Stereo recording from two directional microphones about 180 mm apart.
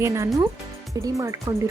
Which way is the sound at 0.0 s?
15° right (ahead or behind).